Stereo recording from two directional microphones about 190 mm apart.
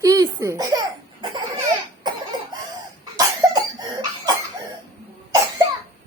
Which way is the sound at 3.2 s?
20° right (ahead or behind).